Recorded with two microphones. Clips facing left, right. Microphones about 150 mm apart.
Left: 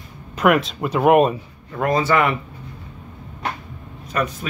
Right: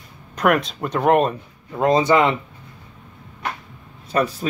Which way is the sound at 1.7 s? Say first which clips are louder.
Right 3 dB; 20° right (ahead or behind).